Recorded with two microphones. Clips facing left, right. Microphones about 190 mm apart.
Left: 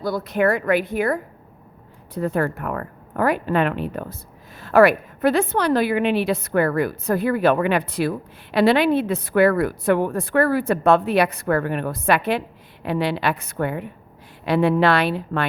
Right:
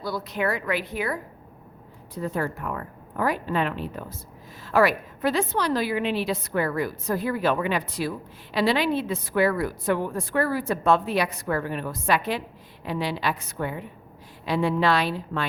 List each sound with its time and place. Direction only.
0.0 s speech: 50° left (ahead or behind)
2.1 s a woman's voice: 60° left (ahead or behind)